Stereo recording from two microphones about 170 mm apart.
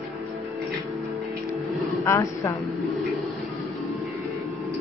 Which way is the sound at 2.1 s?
15° left (ahead or behind).